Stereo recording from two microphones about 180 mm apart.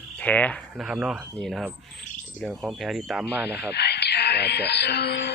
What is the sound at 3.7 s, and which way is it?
Speech, 65° left (ahead or behind).